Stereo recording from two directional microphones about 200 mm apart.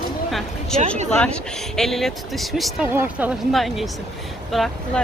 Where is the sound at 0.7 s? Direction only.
35° right (ahead or behind).